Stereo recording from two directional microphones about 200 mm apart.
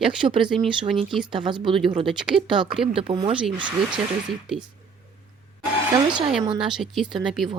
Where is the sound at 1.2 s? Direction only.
25° right (ahead or behind).